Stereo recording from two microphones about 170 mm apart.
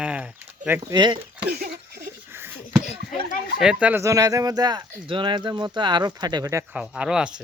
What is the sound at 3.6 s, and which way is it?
Speech, 5° right (ahead or behind).